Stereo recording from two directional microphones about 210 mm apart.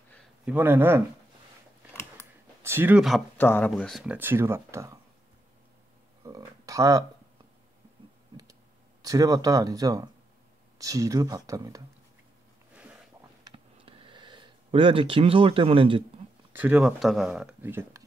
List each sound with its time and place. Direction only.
0.5 s speech: 10° right (ahead or behind)
2.6 s speech: 10° right (ahead or behind)
3.3 s speech: 10° left (ahead or behind); by 4.9 s 15° right (ahead or behind)
6.2 s a sound: 15° right (ahead or behind)
9.0 s speech: 15° right (ahead or behind)
13.4 s a sound: 25° right (ahead or behind)
16.5 s speech: 5° right (ahead or behind)